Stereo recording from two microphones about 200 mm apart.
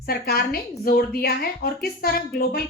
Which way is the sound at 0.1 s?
50° left (ahead or behind).